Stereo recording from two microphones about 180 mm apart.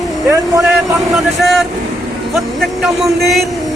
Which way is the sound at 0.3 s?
20° right (ahead or behind).